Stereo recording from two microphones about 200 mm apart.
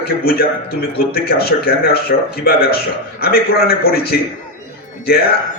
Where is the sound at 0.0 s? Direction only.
50° left (ahead or behind).